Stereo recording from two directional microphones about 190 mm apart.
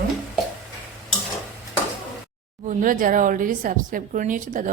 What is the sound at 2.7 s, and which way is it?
A woman's voice, 45° right (ahead or behind).